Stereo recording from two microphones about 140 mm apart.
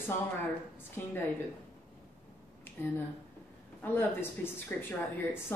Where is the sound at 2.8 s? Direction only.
15° left (ahead or behind).